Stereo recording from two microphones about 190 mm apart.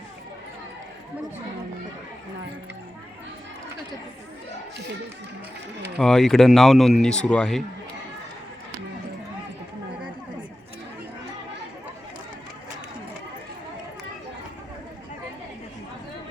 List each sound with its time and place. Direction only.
6.0 s speech: centre (ahead or behind)